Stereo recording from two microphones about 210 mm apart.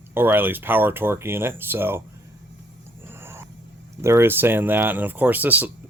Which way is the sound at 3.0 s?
10° right (ahead or behind).